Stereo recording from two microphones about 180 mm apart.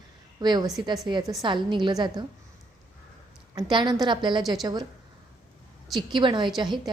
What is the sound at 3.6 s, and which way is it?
A woman's voice, 25° right (ahead or behind).